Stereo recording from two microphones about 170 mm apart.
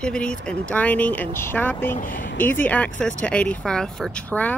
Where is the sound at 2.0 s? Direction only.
55° left (ahead or behind).